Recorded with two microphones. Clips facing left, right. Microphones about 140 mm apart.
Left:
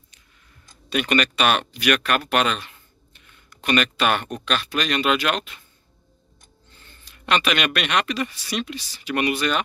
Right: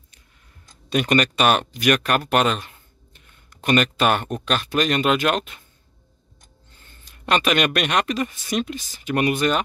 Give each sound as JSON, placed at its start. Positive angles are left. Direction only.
{"t": 0.8, "sound": "speech", "side_deg": -40}
{"t": 6.7, "sound": "speech", "side_deg": -45}